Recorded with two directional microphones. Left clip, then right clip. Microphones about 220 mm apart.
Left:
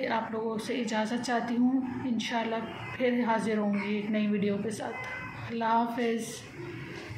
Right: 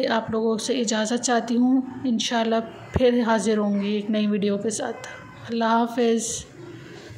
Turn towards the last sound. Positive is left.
turn(degrees=-45)  # may be behind; listen again after turning